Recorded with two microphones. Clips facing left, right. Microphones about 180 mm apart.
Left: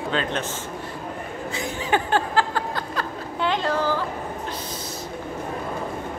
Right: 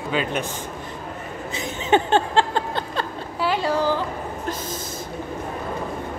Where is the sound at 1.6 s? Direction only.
25° right (ahead or behind).